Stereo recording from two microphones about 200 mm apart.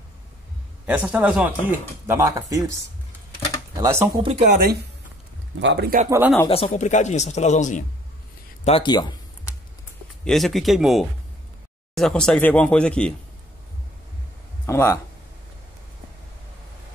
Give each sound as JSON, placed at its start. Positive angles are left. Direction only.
{"t": 0.8, "sound": "a man's voice", "side_deg": -5}
{"t": 3.7, "sound": "speech", "side_deg": -15}
{"t": 4.2, "sound": "speech", "side_deg": -30}
{"t": 5.6, "sound": "speech", "side_deg": -65}
{"t": 6.0, "sound": "a man's voice", "side_deg": -10}
{"t": 6.5, "sound": "speech", "side_deg": 35}
{"t": 8.6, "sound": "speech", "side_deg": 25}
{"t": 10.2, "sound": "speech", "side_deg": 0}
{"t": 14.7, "sound": "speech", "side_deg": 15}